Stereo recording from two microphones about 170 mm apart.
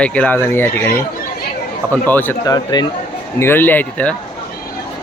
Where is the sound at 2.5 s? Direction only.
25° left (ahead or behind).